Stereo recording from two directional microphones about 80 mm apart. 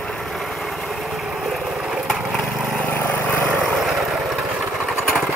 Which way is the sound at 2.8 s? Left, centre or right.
Left.